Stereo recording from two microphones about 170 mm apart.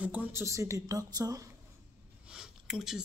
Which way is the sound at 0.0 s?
10° right (ahead or behind).